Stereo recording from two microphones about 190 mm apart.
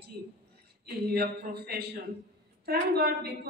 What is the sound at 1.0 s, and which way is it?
A woman's voice, 55° right (ahead or behind).